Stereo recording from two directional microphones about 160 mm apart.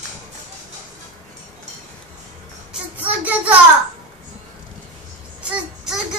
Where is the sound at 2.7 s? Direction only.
10° right (ahead or behind).